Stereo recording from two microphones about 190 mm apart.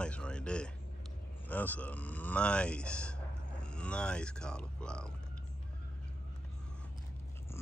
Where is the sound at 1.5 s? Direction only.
10° left (ahead or behind).